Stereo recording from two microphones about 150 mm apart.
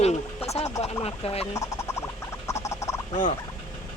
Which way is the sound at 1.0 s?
40° left (ahead or behind).